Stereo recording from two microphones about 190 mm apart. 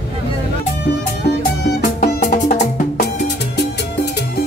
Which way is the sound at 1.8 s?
45° left (ahead or behind).